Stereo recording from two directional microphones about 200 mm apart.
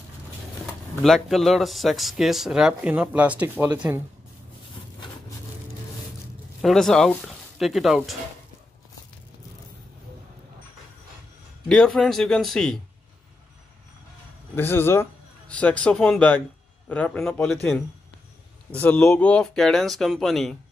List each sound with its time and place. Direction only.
0.7 s speech: centre (ahead or behind)
6.6 s speech: centre (ahead or behind)
11.7 s speech: 5° left (ahead or behind)
14.5 s a man's voice: 10° left (ahead or behind)
18.8 s speech: 5° left (ahead or behind)